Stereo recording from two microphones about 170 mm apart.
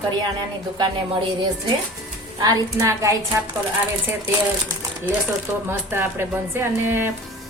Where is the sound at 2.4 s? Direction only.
20° right (ahead or behind).